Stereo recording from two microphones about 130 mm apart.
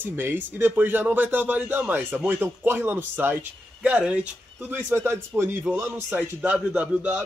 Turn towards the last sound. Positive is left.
turn(degrees=-10)  # may be behind; listen again after turning